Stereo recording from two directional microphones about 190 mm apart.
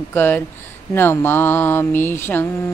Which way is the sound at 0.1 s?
10° left (ahead or behind).